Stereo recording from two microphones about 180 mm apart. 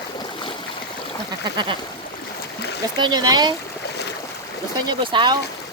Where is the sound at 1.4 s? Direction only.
25° right (ahead or behind).